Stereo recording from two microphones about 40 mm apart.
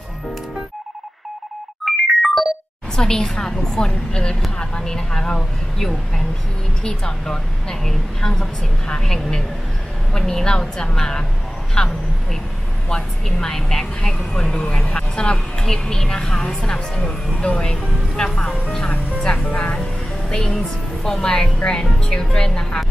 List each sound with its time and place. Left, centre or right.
1.9 s ringtone: centre
3.0 s a woman's voice: centre
5.8 s a woman's voice: centre
6.8 s speech: centre
9.0 s a woman's voice: centre
11.8 s speech: left
12.9 s a woman's voice: centre
14.3 s speech: left
15.3 s a woman's voice: centre
20.2 s a woman's voice: centre